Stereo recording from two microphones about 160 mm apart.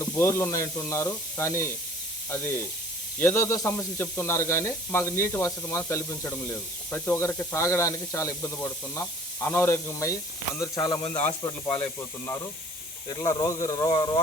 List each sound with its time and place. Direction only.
0.0 s speech: 15° left (ahead or behind)